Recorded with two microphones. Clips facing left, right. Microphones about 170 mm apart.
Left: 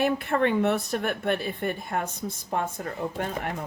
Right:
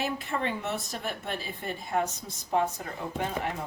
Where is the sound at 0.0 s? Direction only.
60° left (ahead or behind).